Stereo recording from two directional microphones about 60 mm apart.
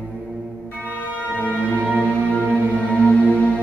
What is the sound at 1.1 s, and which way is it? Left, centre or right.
Music, left.